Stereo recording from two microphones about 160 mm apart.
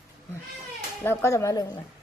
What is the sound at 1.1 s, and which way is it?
Speech, 20° left (ahead or behind).